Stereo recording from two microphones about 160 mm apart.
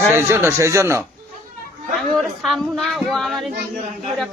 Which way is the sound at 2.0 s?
Centre (ahead or behind).